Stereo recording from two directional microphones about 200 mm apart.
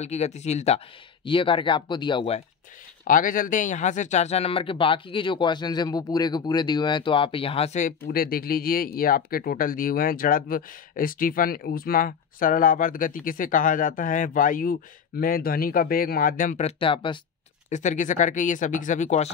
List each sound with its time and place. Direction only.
0.0 s speech: 35° left (ahead or behind)
3.1 s speech: 40° left (ahead or behind); by 17.2 s 25° left (ahead or behind)
17.6 s speech: 35° left (ahead or behind)